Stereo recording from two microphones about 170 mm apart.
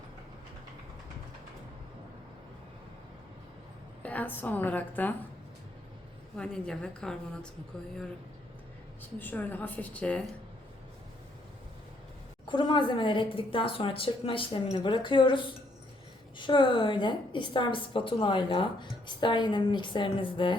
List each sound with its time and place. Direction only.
4.0 s a woman's voice: 10° left (ahead or behind)
6.3 s a woman's voice: 5° left (ahead or behind)
9.1 s a woman's voice: 10° left (ahead or behind)
12.5 s a woman's voice: 30° left (ahead or behind)